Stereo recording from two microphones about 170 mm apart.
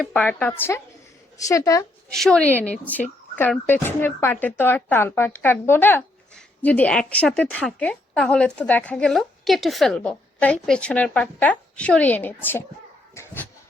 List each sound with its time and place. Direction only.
0.0 s speech: 10° left (ahead or behind)
2.1 s speech: 5° left (ahead or behind)